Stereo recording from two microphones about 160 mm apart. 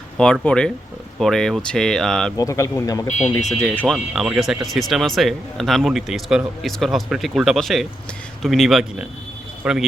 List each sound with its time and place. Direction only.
0.2 s speech: 5° left (ahead or behind)
2.3 s a man's voice: 20° left (ahead or behind)
3.5 s speech: 5° left (ahead or behind)